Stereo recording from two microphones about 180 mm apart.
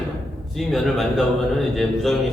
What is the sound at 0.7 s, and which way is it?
Speech, centre (ahead or behind).